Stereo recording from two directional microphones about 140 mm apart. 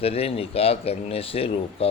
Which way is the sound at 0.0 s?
45° left (ahead or behind).